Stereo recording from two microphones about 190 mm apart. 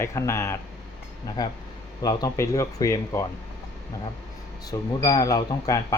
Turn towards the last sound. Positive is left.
turn(degrees=20)  # may be behind; listen again after turning